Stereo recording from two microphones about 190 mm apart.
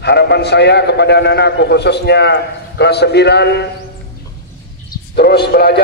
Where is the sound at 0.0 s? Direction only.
60° left (ahead or behind).